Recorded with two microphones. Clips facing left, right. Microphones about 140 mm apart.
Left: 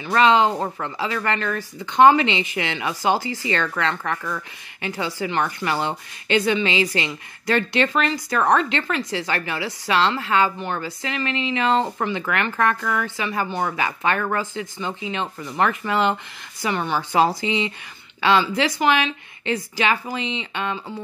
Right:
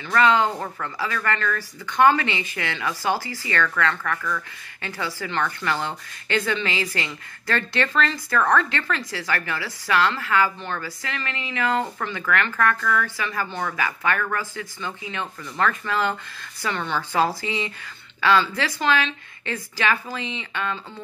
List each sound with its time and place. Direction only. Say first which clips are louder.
0.0 s a woman's voice: left 3 dB; 20° left (ahead or behind)